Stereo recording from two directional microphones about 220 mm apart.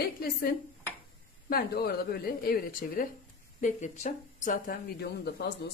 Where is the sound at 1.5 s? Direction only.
45° left (ahead or behind).